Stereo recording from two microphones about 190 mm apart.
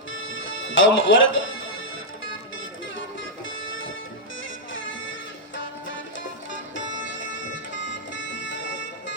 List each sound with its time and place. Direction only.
0.1 s music: 90° left
3.7 s music: 90° left
6.7 s music: 75° left (ahead or behind)